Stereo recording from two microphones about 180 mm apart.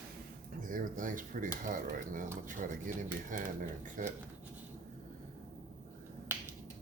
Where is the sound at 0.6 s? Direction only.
50° right (ahead or behind).